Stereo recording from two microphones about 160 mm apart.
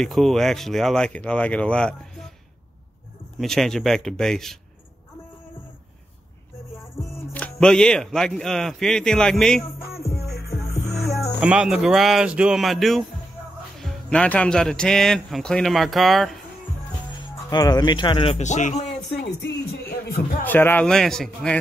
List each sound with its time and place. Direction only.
0.0 s speech: centre (ahead or behind)
3.3 s speech: 5° left (ahead or behind)
7.0 s speech: 5° left (ahead or behind)
9.9 s music: 75° left (ahead or behind)
11.4 s speech: 5° right (ahead or behind)
17.5 s speech: 25° left (ahead or behind); by 18.9 s 50° left (ahead or behind)
19.1 s speech: 90° left
20.4 s speech: 10° left (ahead or behind)